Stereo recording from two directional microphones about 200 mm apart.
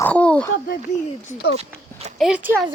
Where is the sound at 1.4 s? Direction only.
50° left (ahead or behind).